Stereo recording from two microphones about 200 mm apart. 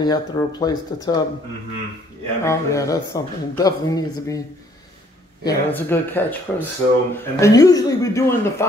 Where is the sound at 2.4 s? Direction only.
15° left (ahead or behind).